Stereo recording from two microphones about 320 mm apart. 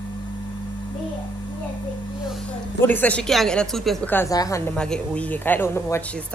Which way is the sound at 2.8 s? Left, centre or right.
Centre.